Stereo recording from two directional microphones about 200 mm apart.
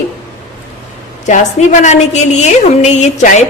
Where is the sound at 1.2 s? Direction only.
35° left (ahead or behind).